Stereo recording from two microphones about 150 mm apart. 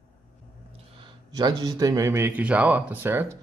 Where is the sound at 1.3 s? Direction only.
25° right (ahead or behind).